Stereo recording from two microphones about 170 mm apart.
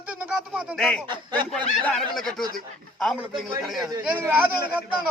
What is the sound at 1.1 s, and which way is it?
Speech, 25° right (ahead or behind).